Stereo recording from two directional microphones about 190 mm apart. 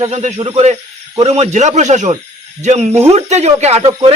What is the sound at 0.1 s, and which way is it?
Speech, 35° right (ahead or behind).